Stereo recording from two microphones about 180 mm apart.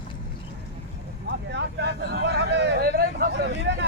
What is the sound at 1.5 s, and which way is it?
Vehicle, 75° right (ahead or behind).